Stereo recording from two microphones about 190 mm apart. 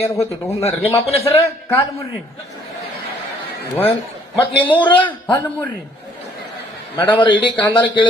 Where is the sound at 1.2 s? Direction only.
15° left (ahead or behind).